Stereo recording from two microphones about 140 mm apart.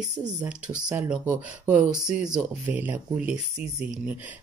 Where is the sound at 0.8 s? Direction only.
5° right (ahead or behind).